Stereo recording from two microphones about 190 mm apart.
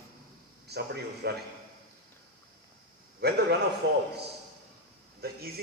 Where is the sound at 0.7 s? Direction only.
60° right (ahead or behind).